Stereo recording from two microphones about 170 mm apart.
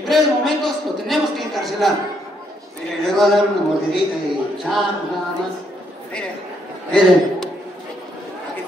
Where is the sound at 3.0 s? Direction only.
Centre (ahead or behind).